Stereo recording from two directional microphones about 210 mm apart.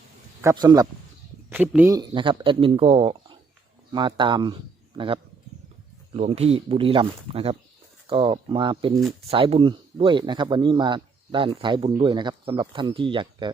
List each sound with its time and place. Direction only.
0.4 s speech: 20° right (ahead or behind)
1.5 s speech: 5° right (ahead or behind); by 13.5 s 25° right (ahead or behind)